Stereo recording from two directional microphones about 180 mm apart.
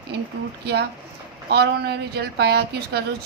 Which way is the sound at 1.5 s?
65° right (ahead or behind).